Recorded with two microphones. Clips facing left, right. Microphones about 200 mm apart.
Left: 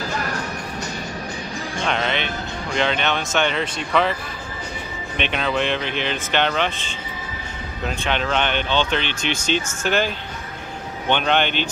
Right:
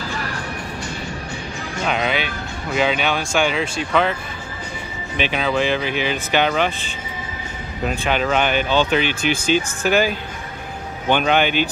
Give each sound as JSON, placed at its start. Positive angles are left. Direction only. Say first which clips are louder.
{"t": 0.1, "sound": "music", "louder": "left 1 dB", "side_deg": 45}
{"t": 1.9, "sound": "speech", "louder": "right 2 dB", "side_deg": -5}
{"t": 5.1, "sound": "speech", "louder": "right 2 dB", "side_deg": -5}
{"t": 7.8, "sound": "speech", "louder": "right 3 dB", "side_deg": -5}